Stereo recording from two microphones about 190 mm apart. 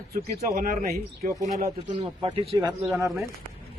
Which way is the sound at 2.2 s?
25° right (ahead or behind).